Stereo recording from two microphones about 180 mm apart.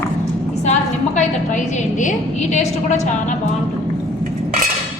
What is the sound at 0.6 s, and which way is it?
A woman's voice, 40° left (ahead or behind).